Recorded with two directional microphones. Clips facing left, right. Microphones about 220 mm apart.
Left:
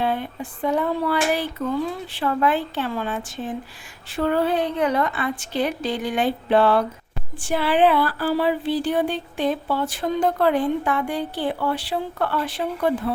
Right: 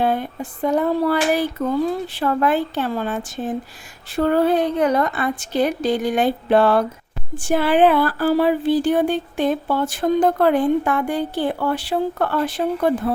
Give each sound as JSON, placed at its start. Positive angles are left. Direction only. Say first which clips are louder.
{"t": 0.0, "sound": "speech", "louder": "right 4 dB", "side_deg": -45}